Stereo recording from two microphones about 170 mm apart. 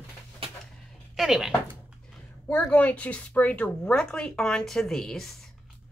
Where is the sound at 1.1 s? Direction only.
Centre (ahead or behind).